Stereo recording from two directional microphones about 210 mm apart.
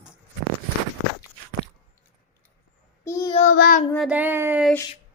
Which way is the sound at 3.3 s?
35° left (ahead or behind).